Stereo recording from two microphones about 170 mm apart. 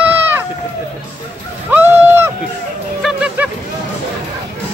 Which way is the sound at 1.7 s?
15° right (ahead or behind).